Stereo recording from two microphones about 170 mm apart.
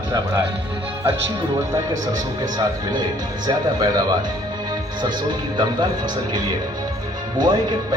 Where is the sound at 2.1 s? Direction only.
25° right (ahead or behind).